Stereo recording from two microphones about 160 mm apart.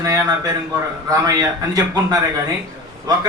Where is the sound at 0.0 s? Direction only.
20° right (ahead or behind).